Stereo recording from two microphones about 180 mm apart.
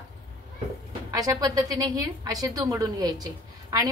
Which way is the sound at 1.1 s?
20° right (ahead or behind).